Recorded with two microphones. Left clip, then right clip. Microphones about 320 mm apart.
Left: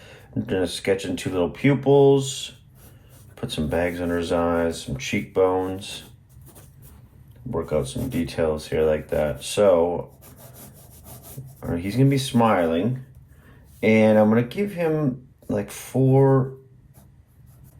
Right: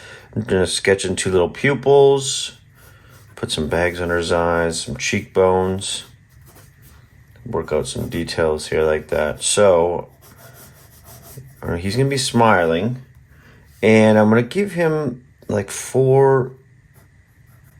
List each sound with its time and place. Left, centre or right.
0.0 s speech: right
3.4 s speech: right
7.5 s speech: right
11.6 s speech: right